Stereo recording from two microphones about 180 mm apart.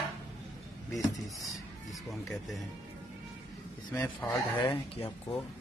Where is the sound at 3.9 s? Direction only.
10° left (ahead or behind).